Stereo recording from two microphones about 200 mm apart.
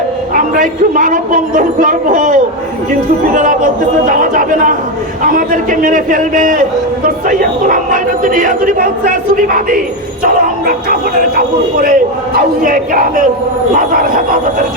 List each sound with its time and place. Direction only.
0.3 s a man's voice: 40° right (ahead or behind)
4.0 s a man's voice: 45° right (ahead or behind)